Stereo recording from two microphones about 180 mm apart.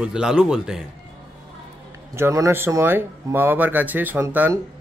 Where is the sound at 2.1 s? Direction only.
15° right (ahead or behind).